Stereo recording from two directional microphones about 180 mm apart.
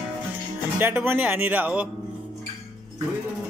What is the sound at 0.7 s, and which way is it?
Speech, 10° right (ahead or behind).